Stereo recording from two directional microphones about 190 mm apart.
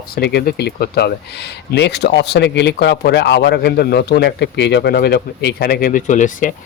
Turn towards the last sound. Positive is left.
turn(degrees=40)  # may be behind; listen again after turning